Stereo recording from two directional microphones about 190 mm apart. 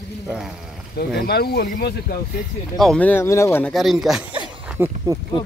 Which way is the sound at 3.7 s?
Centre (ahead or behind).